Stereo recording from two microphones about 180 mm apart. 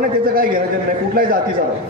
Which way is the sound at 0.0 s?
55° right (ahead or behind).